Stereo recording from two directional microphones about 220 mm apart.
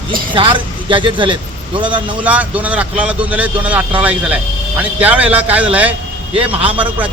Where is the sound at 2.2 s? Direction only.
5° right (ahead or behind).